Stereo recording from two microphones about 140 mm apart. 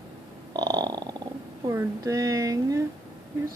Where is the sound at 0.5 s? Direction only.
30° right (ahead or behind).